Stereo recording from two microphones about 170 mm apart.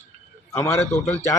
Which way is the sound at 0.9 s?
40° left (ahead or behind).